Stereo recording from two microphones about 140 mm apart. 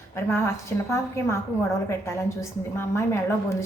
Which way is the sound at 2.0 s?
20° left (ahead or behind).